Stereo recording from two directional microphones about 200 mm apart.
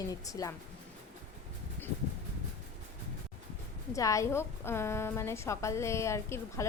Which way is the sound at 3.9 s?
15° left (ahead or behind).